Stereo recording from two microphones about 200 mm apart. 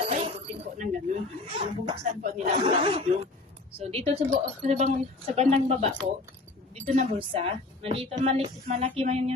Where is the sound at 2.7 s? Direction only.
30° right (ahead or behind).